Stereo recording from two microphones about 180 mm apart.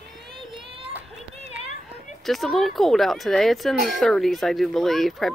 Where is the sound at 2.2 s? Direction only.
Centre (ahead or behind).